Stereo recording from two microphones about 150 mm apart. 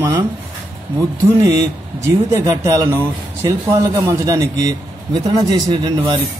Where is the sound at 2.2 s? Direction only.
20° right (ahead or behind).